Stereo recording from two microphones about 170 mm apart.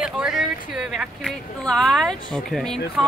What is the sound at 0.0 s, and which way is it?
Speech, centre (ahead or behind).